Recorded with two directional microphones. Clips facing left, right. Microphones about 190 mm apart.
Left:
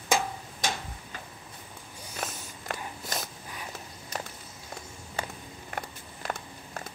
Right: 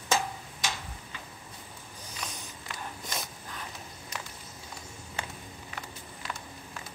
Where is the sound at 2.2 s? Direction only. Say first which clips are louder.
Left 5 dB; 45° left (ahead or behind).